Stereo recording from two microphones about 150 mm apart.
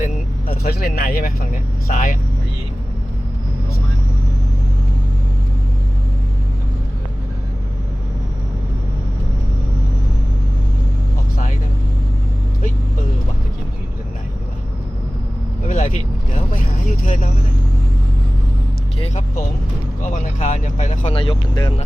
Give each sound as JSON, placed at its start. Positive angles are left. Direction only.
{"t": 0.0, "sound": "speech", "side_deg": 75}
{"t": 15.6, "sound": "vehicle", "side_deg": 55}
{"t": 20.0, "sound": "a sound", "side_deg": 55}
{"t": 21.1, "sound": "vehicle", "side_deg": 35}